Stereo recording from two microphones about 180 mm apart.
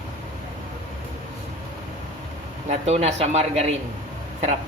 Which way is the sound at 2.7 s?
35° right (ahead or behind).